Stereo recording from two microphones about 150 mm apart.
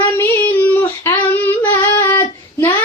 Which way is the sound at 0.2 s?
15° left (ahead or behind).